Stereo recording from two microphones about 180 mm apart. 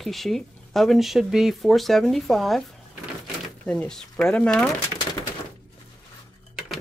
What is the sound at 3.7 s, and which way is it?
Speech, 5° left (ahead or behind).